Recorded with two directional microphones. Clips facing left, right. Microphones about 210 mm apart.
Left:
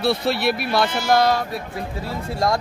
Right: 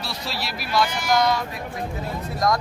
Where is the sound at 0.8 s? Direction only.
30° left (ahead or behind).